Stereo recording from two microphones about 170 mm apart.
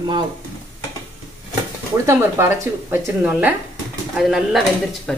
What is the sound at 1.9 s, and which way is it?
Speech, 15° right (ahead or behind).